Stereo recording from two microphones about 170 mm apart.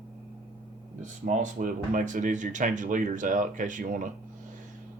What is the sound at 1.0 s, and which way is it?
Speech, 50° right (ahead or behind).